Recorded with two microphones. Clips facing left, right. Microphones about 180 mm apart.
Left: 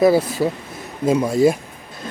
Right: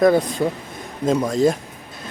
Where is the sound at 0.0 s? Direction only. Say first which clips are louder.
Left 1 dB; 5° left (ahead or behind).